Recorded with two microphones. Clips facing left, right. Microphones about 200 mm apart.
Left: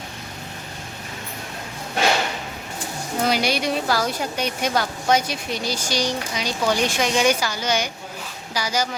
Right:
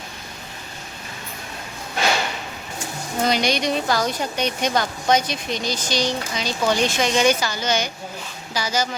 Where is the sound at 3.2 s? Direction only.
5° left (ahead or behind).